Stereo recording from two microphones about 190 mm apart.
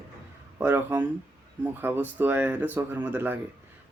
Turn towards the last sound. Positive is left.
turn(degrees=-10)  # may be behind; listen again after turning